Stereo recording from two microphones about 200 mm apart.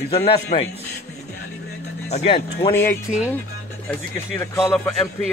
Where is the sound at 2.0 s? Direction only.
30° left (ahead or behind).